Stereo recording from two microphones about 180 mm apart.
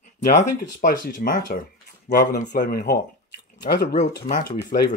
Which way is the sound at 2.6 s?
60° left (ahead or behind).